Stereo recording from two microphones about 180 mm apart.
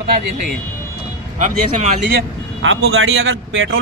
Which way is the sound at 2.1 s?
80° right.